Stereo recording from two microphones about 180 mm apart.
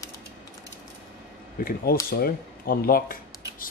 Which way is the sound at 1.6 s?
55° left (ahead or behind).